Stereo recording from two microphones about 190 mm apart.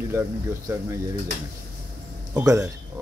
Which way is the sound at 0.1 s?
15° right (ahead or behind).